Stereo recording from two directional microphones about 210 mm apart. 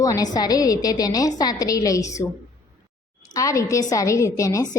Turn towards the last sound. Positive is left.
turn(degrees=15)  # may be behind; listen again after turning